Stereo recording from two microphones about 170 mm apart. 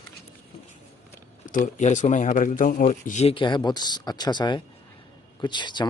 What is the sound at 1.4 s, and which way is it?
A man's voice, 50° left (ahead or behind).